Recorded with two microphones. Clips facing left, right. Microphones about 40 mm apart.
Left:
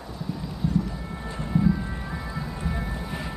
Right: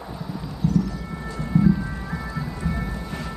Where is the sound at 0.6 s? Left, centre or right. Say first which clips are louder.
Right 4 dB; left.